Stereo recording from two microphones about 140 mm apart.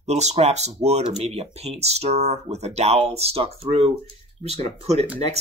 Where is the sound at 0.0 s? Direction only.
50° right (ahead or behind).